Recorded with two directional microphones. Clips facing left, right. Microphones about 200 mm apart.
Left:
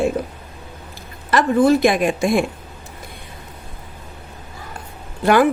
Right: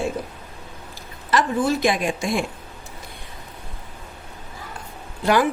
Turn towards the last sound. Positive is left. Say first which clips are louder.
# left 4 dB
turn(degrees=55)  # may be behind; listen again after turning